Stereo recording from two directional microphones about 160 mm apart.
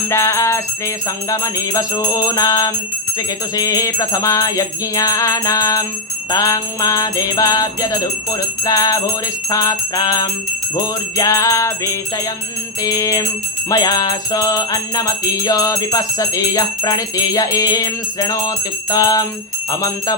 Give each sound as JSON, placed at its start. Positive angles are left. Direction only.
{"t": 0.1, "sound": "music", "side_deg": 20}